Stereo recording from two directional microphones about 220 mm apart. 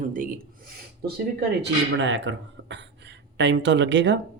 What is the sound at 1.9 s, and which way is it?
Speech, 55° right (ahead or behind).